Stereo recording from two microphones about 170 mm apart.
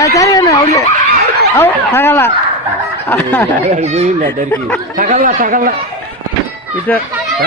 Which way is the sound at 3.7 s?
40° right (ahead or behind).